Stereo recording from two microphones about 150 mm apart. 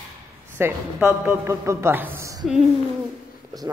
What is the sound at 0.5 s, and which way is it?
A man's voice, 15° right (ahead or behind).